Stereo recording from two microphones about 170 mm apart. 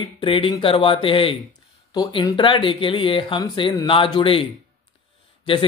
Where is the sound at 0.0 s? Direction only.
30° left (ahead or behind).